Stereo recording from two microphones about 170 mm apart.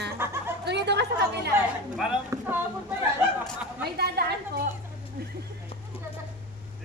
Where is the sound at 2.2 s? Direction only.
15° right (ahead or behind).